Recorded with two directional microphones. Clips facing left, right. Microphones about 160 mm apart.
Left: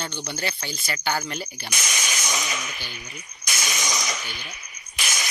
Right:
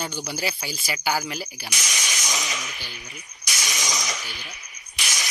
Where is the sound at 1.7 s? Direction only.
55° left (ahead or behind).